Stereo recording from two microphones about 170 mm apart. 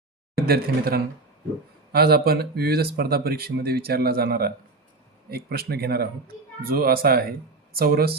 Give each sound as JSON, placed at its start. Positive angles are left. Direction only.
{"t": 0.3, "sound": "speech", "side_deg": -65}